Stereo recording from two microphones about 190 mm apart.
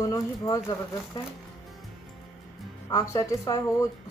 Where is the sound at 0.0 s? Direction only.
20° left (ahead or behind).